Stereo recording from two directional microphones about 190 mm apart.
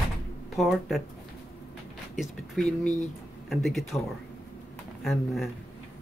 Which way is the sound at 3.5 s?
Centre (ahead or behind).